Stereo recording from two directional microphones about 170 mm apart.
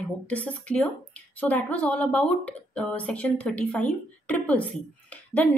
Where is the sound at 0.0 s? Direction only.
10° left (ahead or behind).